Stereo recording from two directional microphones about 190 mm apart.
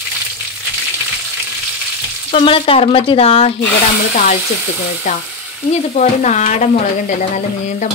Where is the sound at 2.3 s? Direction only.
30° left (ahead or behind).